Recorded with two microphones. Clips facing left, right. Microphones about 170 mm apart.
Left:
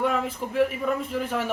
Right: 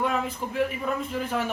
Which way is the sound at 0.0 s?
60° left (ahead or behind).